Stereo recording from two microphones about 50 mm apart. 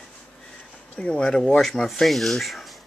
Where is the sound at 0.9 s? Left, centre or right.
Centre.